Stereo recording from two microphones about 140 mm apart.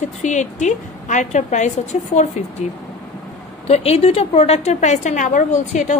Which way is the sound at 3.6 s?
45° left (ahead or behind).